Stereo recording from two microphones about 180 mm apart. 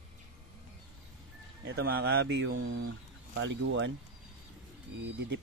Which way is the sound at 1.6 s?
70° right (ahead or behind).